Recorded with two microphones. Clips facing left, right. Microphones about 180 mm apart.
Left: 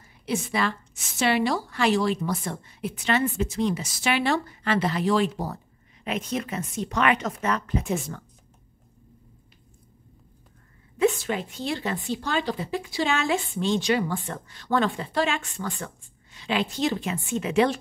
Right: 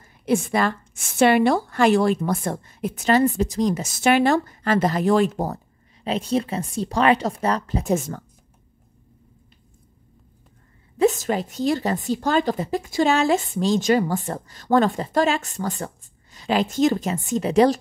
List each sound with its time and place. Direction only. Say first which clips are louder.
0.0 s a woman's voice: right 7 dB; 50° right (ahead or behind)
6.0 s a woman's voice: right 6 dB; 30° right (ahead or behind)
11.0 s a woman's voice: right 4 dB; 40° right (ahead or behind)